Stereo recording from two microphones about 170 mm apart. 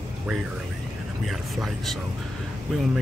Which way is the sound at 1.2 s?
Centre (ahead or behind).